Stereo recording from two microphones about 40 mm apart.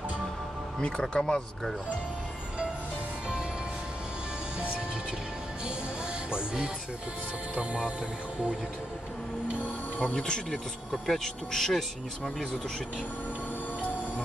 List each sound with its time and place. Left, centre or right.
0.7 s speech: left
6.3 s music: right
10.1 s speech: left
10.9 s speech: centre